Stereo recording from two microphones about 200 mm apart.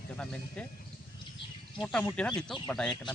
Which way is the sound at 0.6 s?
5° left (ahead or behind).